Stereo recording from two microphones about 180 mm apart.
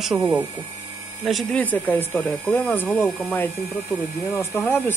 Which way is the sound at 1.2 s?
5° left (ahead or behind).